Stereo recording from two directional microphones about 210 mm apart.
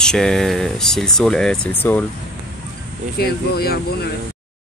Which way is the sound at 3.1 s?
50° left (ahead or behind).